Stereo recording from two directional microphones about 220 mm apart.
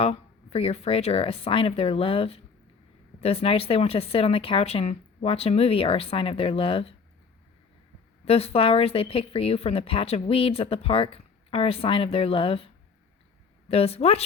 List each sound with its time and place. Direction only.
0.0 s speech: 25° left (ahead or behind)
8.2 s speech: 25° left (ahead or behind)